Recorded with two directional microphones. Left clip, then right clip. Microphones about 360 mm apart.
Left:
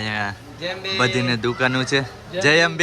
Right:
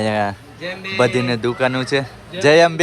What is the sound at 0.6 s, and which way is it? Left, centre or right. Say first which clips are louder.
Speech: left 1 dB; left.